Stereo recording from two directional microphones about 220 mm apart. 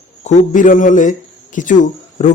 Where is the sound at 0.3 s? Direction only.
35° left (ahead or behind).